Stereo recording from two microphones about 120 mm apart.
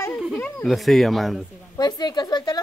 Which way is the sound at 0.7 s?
Centre (ahead or behind).